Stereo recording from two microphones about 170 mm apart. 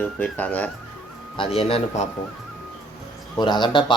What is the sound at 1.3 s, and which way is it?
Speech, 30° left (ahead or behind).